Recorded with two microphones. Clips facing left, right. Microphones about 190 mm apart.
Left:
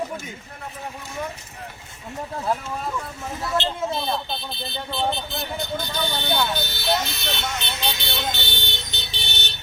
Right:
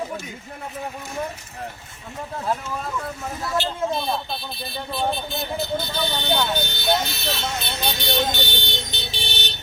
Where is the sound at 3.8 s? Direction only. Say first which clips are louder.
Right 1 dB; centre (ahead or behind).